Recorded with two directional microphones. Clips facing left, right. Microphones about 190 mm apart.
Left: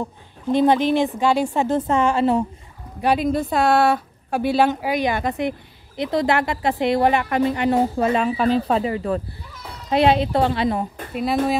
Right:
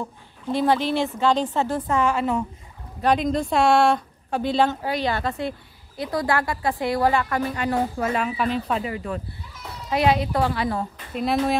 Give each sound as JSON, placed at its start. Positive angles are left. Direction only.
{"t": 0.0, "sound": "speech", "side_deg": 20}
{"t": 3.0, "sound": "speech", "side_deg": 10}